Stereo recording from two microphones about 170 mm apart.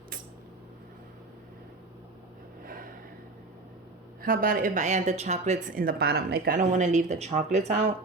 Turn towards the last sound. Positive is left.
turn(degrees=-40)  # may be behind; listen again after turning